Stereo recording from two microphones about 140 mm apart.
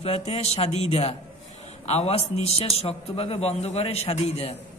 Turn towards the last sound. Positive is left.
turn(degrees=45)  # may be behind; listen again after turning